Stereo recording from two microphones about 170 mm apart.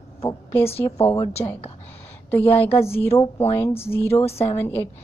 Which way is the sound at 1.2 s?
40° left (ahead or behind).